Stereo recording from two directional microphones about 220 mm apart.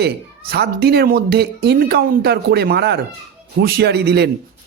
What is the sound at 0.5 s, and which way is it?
Speech, 45° right (ahead or behind).